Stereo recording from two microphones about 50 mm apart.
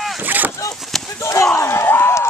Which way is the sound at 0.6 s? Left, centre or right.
Centre.